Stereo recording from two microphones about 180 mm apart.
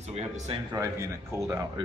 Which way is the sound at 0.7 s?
20° right (ahead or behind).